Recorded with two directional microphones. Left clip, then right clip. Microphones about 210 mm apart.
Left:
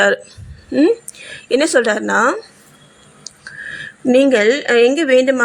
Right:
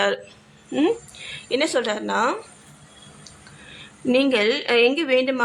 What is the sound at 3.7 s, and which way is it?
Speech, 20° left (ahead or behind).